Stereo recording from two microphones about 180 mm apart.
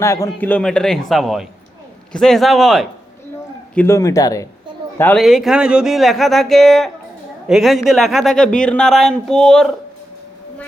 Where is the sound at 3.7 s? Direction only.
15° left (ahead or behind).